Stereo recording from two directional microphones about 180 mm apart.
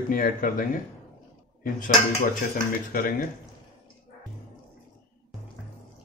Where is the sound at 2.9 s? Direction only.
55° left (ahead or behind).